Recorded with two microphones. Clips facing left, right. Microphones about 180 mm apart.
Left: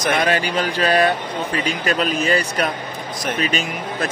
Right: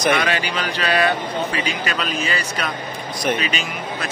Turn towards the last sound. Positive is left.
turn(degrees=50)  # may be behind; listen again after turning